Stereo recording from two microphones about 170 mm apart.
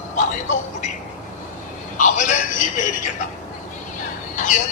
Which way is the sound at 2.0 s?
50° left (ahead or behind).